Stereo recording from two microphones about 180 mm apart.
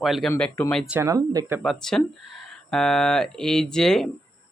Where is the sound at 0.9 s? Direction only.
15° right (ahead or behind).